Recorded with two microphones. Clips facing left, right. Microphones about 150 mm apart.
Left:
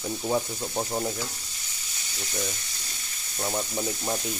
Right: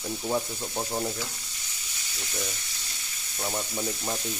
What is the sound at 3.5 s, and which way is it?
Speech, 5° left (ahead or behind).